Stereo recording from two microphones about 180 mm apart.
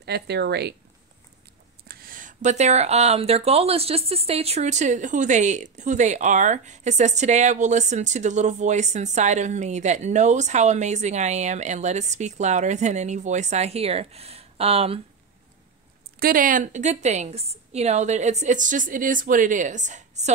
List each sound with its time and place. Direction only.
0.0 s speech: 65° right (ahead or behind)
1.9 s a woman's voice: 55° right (ahead or behind); by 15.0 s 35° right (ahead or behind)
16.2 s a woman's voice: 50° right (ahead or behind)